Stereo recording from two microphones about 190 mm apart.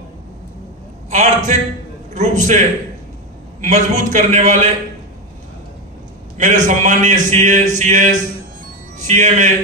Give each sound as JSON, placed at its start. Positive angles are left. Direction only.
{"t": 1.1, "sound": "a man's voice", "side_deg": -40}
{"t": 3.6, "sound": "a man's voice", "side_deg": -40}
{"t": 6.3, "sound": "a man's voice", "side_deg": -40}